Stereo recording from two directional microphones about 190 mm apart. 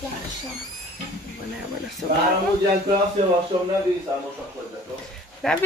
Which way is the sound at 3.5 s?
25° right (ahead or behind).